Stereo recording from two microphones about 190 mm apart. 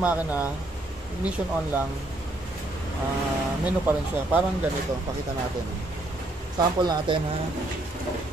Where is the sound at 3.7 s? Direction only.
10° right (ahead or behind).